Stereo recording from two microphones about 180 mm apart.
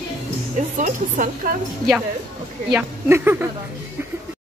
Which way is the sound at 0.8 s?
50° right (ahead or behind).